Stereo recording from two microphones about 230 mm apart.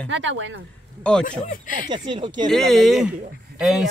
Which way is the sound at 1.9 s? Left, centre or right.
Centre.